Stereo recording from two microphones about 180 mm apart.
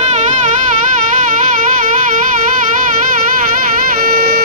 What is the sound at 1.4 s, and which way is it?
Music, 45° right (ahead or behind).